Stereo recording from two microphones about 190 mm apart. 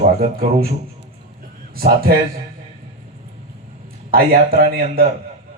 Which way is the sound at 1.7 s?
50° right (ahead or behind).